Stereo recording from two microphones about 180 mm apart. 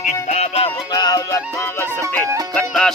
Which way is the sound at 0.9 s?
20° left (ahead or behind).